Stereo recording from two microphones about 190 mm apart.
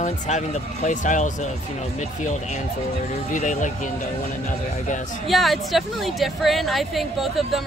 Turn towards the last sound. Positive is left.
turn(degrees=0)  # may be behind; listen again after turning